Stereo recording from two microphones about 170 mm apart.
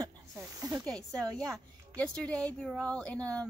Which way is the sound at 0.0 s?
20° right (ahead or behind).